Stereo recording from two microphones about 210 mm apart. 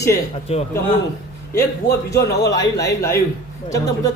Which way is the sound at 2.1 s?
15° left (ahead or behind).